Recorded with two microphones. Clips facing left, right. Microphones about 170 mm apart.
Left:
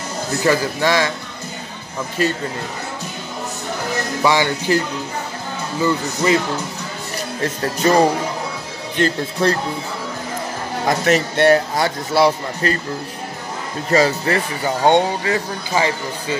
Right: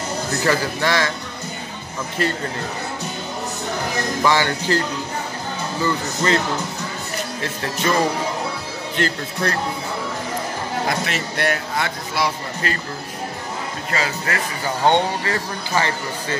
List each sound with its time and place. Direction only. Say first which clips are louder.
0.4 s speech: left 4 dB; 15° left (ahead or behind)
4.2 s speech: left 2 dB; 15° left (ahead or behind)
7.4 s speech: left 6 dB; 40° left (ahead or behind)
8.9 s speech: left 5 dB; 25° left (ahead or behind)
10.9 s speech: left 12 dB; 40° left (ahead or behind)
11.3 s speech: left 6 dB; 30° left (ahead or behind)
13.8 s speech: left 10 dB; 35° left (ahead or behind)
14.8 s speech: left 3 dB; 15° left (ahead or behind)